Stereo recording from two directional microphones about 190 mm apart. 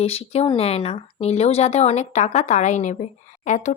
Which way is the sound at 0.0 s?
30° left (ahead or behind).